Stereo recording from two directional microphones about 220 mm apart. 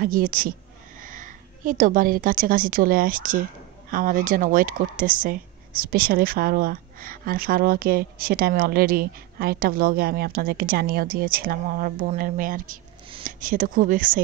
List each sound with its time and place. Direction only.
0.0 s speech: 40° right (ahead or behind)